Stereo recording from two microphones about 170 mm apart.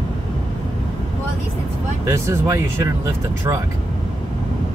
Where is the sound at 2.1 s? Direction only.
15° right (ahead or behind).